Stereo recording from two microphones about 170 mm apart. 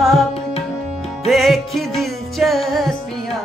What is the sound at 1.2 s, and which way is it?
Music, centre (ahead or behind).